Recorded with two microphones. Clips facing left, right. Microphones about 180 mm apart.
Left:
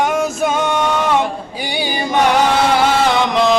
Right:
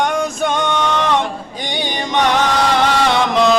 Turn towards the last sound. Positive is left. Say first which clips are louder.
# even
turn(degrees=0)  # may be behind; listen again after turning